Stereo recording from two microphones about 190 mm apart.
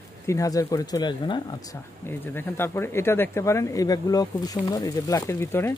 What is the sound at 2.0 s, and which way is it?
Speech, 10° left (ahead or behind).